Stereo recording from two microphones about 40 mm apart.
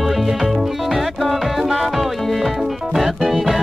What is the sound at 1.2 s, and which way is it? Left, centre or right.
Music, centre.